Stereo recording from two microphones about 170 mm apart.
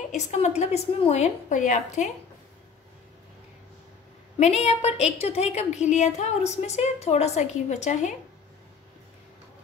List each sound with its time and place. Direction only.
0.1 s a woman's voice: 40° left (ahead or behind)
4.4 s a woman's voice: 40° left (ahead or behind)